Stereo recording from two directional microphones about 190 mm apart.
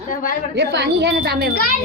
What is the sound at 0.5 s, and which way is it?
Speech, 65° right (ahead or behind).